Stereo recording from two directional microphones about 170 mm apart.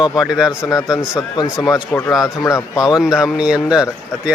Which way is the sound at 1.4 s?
25° left (ahead or behind).